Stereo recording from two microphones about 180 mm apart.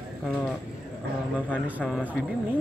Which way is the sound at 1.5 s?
5° left (ahead or behind).